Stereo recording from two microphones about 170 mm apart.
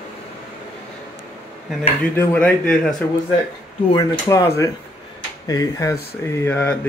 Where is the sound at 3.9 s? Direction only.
20° left (ahead or behind).